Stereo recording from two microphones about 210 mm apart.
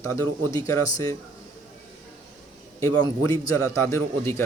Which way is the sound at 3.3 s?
15° left (ahead or behind).